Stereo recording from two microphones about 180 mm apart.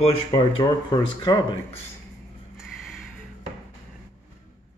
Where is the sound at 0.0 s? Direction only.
25° left (ahead or behind).